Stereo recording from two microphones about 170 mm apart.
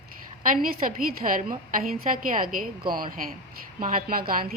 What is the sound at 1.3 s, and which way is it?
A woman's voice, 55° right (ahead or behind).